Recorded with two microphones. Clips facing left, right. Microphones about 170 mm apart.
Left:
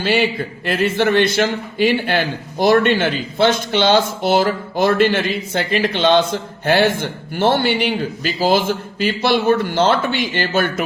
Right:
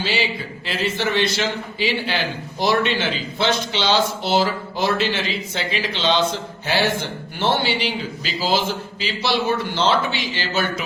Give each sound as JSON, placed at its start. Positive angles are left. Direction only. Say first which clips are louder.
{"t": 0.0, "sound": "a man's voice", "louder": "left 6 dB", "side_deg": 55}